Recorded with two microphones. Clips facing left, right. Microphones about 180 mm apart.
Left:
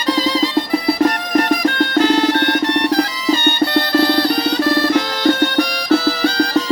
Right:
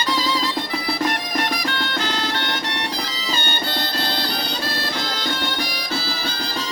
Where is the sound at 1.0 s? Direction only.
45° left (ahead or behind); by 6.6 s 70° left (ahead or behind).